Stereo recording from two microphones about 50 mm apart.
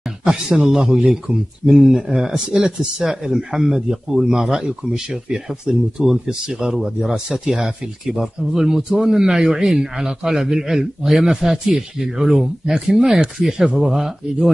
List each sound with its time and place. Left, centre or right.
0.2 s speech: centre